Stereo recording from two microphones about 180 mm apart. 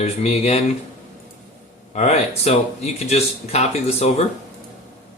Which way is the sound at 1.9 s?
40° left (ahead or behind).